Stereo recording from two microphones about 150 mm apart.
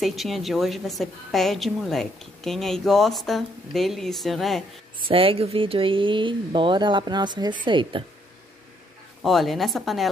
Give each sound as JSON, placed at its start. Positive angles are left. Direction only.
{"t": 0.0, "sound": "a woman's voice", "side_deg": 0}
{"t": 5.0, "sound": "speech", "side_deg": -40}
{"t": 9.2, "sound": "a woman's voice", "side_deg": 0}